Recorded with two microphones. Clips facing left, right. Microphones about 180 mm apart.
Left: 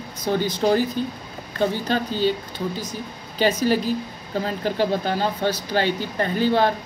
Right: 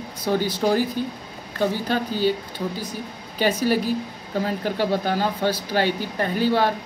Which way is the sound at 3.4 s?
10° right (ahead or behind).